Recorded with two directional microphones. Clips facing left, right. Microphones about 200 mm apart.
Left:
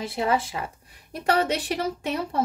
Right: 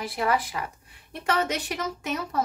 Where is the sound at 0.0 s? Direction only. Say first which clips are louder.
Left 1 dB; 25° left (ahead or behind).